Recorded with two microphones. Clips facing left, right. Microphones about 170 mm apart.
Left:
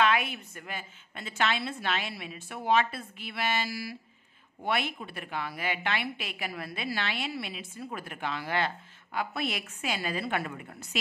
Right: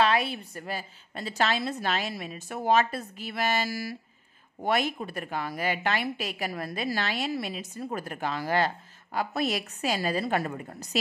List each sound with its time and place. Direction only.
0.0 s a woman's voice: 35° right (ahead or behind)